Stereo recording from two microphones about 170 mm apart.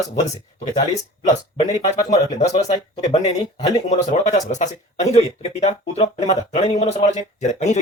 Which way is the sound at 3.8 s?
45° left (ahead or behind).